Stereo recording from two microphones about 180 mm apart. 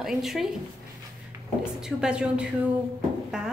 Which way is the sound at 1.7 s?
5° right (ahead or behind).